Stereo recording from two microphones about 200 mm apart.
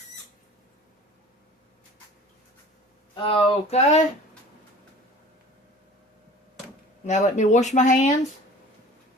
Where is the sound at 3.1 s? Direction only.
25° left (ahead or behind).